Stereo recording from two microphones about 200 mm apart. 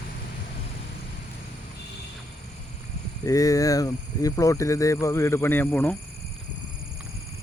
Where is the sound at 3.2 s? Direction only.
15° left (ahead or behind).